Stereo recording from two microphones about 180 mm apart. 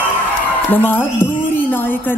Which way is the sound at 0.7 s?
10° left (ahead or behind).